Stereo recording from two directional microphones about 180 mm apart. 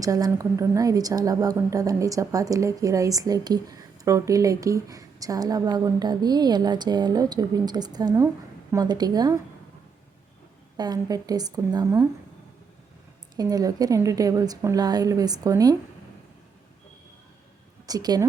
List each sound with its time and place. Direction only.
0.0 s a woman's voice: 20° right (ahead or behind)
10.8 s a woman's voice: 20° right (ahead or behind)
13.3 s a woman's voice: 20° right (ahead or behind)
17.8 s a woman's voice: 20° right (ahead or behind)